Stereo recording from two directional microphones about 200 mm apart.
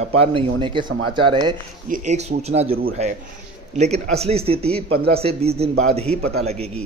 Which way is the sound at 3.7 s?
35° right (ahead or behind).